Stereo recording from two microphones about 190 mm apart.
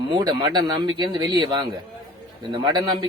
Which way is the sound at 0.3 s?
20° right (ahead or behind).